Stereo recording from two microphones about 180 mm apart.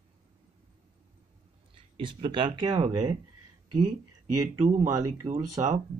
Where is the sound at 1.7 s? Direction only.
30° right (ahead or behind).